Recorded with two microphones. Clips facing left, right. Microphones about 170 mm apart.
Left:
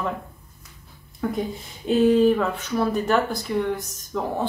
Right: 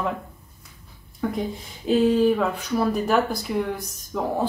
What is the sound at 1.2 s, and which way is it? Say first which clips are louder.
Speech: even; centre (ahead or behind).